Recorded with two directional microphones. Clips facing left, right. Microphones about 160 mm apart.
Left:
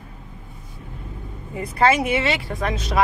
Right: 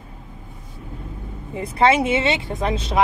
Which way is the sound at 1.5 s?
25° right (ahead or behind).